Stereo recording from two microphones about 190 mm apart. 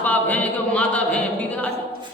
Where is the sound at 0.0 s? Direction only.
10° left (ahead or behind).